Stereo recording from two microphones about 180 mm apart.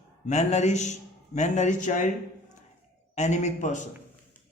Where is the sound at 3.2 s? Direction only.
40° left (ahead or behind).